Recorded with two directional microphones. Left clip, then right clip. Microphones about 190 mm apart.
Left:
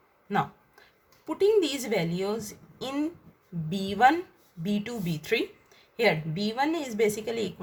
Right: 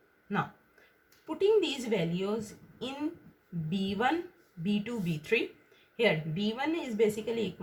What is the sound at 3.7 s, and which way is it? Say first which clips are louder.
A woman's voice: left 8 dB; 30° left (ahead or behind).